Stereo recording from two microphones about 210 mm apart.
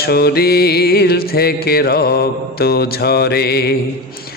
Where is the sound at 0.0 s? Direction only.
45° left (ahead or behind).